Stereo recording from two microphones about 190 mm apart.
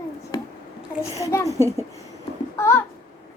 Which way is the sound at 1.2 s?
15° left (ahead or behind).